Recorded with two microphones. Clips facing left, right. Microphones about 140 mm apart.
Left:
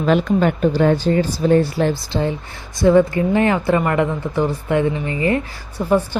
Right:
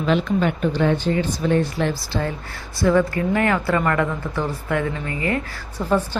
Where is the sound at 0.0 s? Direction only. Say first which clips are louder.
Left 4 dB; 45° left (ahead or behind).